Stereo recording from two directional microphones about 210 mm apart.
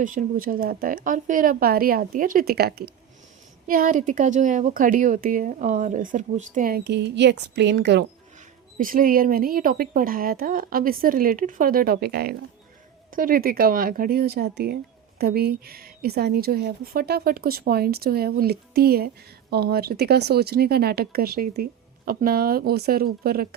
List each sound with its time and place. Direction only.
0.0 s a woman's voice: 40° right (ahead or behind); by 8.0 s 55° right (ahead or behind)
8.8 s a woman's voice: 40° right (ahead or behind)